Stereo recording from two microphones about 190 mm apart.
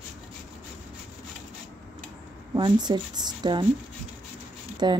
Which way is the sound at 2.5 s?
20° right (ahead or behind).